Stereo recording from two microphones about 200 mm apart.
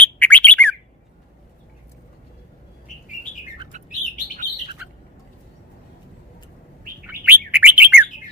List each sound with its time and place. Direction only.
0.0 s bird: 10° left (ahead or behind)
3.7 s bird: 35° right (ahead or behind)
7.1 s bird: 10° right (ahead or behind)